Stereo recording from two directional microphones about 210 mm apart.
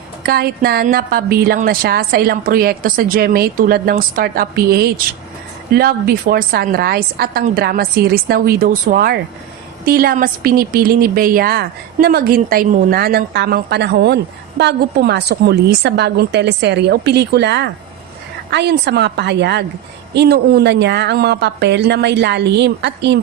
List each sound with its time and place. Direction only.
0.2 s a woman's voice: 45° right (ahead or behind)